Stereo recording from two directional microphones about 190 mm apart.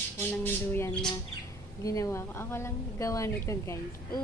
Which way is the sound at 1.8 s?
15° left (ahead or behind).